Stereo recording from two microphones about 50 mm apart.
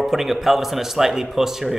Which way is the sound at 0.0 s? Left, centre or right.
Centre.